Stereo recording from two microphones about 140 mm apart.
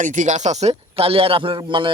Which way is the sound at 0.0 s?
65° right (ahead or behind).